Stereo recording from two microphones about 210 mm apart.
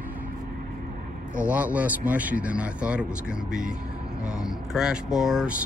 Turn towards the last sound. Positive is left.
turn(degrees=0)  # may be behind; listen again after turning